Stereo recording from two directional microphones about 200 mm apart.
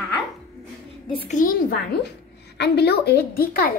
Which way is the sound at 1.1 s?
25° left (ahead or behind).